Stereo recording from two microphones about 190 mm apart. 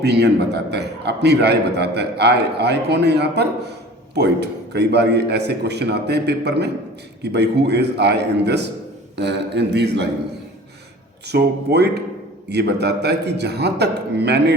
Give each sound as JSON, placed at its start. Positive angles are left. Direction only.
{"t": 0.0, "sound": "a man's voice", "side_deg": -60}
{"t": 11.3, "sound": "a man's voice", "side_deg": -60}